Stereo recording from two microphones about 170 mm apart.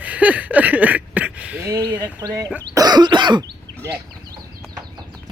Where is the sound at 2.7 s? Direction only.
25° right (ahead or behind).